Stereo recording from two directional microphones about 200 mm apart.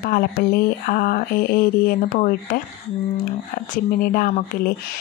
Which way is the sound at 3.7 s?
45° left (ahead or behind).